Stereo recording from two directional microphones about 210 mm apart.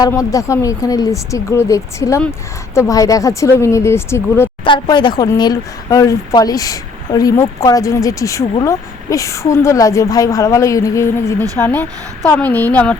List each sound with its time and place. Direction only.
0.0 s speech: 15° left (ahead or behind)
4.6 s speech: 25° left (ahead or behind); by 13.0 s 5° left (ahead or behind)